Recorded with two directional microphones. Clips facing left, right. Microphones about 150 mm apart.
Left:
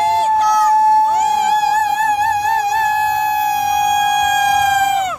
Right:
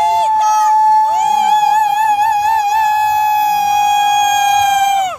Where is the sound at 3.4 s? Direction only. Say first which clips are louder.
Right 3 dB; 5° right (ahead or behind).